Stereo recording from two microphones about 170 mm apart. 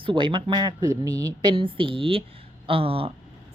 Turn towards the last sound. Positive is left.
turn(degrees=-35)  # may be behind; listen again after turning